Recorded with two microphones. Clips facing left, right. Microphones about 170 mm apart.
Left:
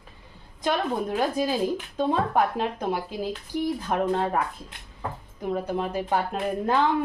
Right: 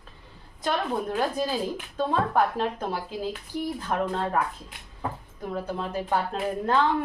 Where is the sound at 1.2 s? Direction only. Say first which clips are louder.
Left 4 dB; 15° left (ahead or behind).